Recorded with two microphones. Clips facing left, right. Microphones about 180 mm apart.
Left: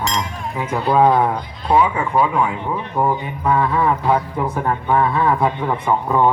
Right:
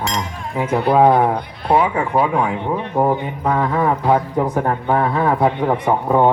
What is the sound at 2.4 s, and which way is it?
A man's voice, 60° right (ahead or behind).